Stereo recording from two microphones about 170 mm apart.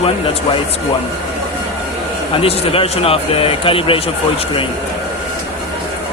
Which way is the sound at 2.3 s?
35° left (ahead or behind).